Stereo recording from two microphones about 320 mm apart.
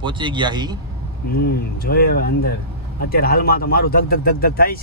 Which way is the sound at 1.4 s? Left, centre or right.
Left.